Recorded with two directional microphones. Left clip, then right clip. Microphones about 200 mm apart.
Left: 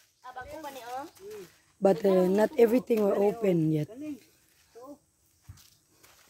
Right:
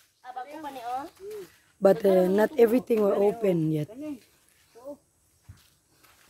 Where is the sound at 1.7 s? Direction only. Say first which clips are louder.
Right 3 dB; 10° right (ahead or behind).